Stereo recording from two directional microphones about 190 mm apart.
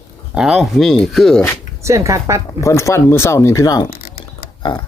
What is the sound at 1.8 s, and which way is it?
Speech, 15° right (ahead or behind).